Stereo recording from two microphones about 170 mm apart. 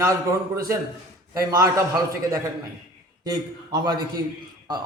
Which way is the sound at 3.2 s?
20° right (ahead or behind).